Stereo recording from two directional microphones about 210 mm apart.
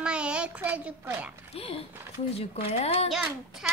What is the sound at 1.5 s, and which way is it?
Speech, 30° left (ahead or behind).